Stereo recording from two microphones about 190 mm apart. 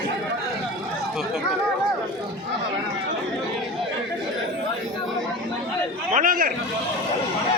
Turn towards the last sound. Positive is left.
turn(degrees=-45)  # may be behind; listen again after turning